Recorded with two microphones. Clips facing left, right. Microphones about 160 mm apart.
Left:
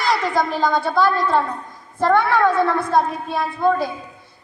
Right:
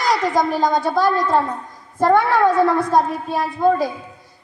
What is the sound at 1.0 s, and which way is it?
Speech, 40° right (ahead or behind).